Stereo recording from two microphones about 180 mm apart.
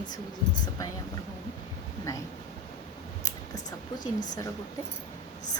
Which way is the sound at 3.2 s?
20° left (ahead or behind).